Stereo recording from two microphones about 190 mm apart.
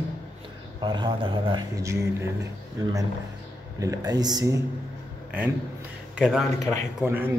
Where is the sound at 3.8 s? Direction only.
20° right (ahead or behind).